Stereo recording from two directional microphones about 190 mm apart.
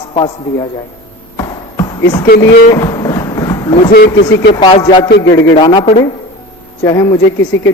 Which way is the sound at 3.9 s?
60° left (ahead or behind).